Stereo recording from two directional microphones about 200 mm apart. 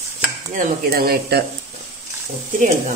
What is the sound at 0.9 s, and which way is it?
Speech, 50° right (ahead or behind).